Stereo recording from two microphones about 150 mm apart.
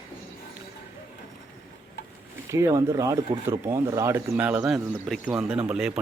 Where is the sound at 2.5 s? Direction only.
20° right (ahead or behind).